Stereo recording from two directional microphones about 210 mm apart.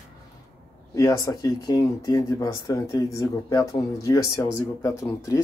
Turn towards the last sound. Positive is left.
turn(degrees=15)  # may be behind; listen again after turning